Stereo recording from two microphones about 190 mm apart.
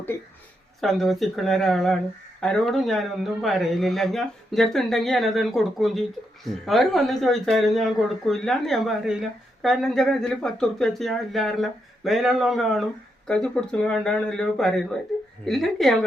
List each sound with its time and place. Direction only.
0.8 s speech: centre (ahead or behind)